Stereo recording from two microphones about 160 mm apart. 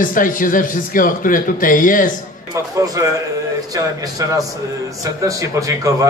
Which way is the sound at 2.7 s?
20° right (ahead or behind).